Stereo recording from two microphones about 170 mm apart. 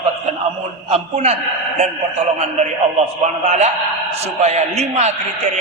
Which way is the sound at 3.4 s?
40° right (ahead or behind).